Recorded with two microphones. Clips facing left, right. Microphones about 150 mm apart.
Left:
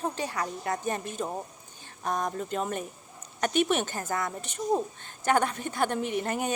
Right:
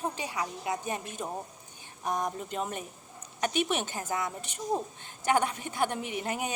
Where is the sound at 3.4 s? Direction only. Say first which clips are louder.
Left 3 dB; 50° left (ahead or behind).